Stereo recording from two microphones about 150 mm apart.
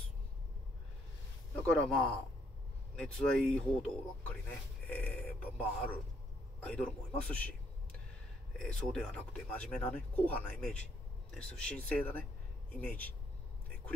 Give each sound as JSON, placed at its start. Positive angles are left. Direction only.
{"t": 1.6, "sound": "speech", "side_deg": 5}
{"t": 8.5, "sound": "speech", "side_deg": 5}